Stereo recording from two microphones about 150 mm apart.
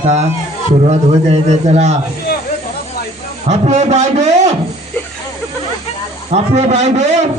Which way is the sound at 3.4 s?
45° right (ahead or behind).